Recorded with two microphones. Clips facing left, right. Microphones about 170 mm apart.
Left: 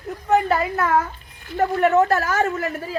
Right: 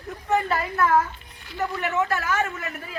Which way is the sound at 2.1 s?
35° left (ahead or behind).